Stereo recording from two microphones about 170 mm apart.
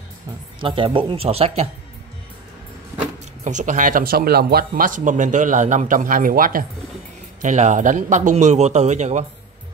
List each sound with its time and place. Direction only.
0.6 s speech: 30° right (ahead or behind)
3.4 s speech: 45° right (ahead or behind)
7.4 s speech: 45° right (ahead or behind)